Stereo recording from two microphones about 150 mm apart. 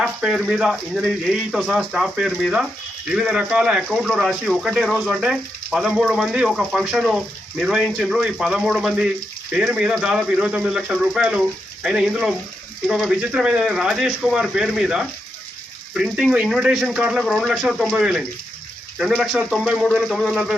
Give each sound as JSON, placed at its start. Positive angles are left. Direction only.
{"t": 0.0, "sound": "speech", "side_deg": -5}